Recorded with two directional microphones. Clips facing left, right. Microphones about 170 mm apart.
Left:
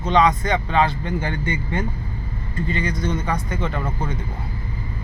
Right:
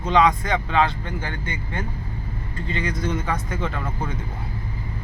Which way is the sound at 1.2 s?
15° left (ahead or behind).